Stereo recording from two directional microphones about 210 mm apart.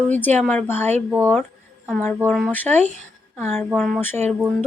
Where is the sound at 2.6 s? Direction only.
35° right (ahead or behind).